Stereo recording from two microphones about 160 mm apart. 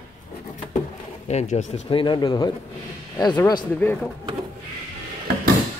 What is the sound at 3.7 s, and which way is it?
Speech, 10° left (ahead or behind).